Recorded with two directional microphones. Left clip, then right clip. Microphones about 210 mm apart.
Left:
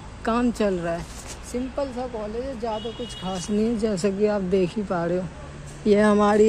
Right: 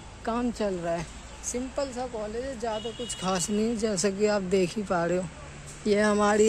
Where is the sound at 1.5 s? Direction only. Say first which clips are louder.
Left 2 dB; 10° left (ahead or behind).